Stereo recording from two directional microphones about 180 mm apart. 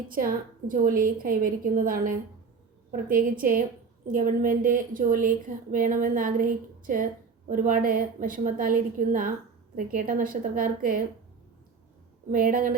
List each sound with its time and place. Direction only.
0.1 s a woman's voice: 50° right (ahead or behind)
12.3 s a woman's voice: 50° right (ahead or behind)